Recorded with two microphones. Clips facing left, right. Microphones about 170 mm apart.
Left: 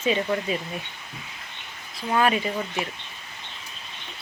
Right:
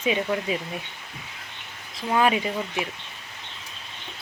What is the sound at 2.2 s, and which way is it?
Speech, 15° right (ahead or behind).